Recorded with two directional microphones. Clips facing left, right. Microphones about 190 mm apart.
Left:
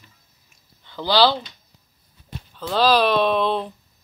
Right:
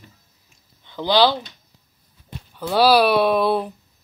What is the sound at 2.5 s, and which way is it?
Speech, 10° right (ahead or behind).